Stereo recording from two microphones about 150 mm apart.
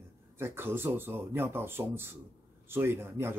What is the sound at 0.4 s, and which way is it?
Speech, 15° right (ahead or behind).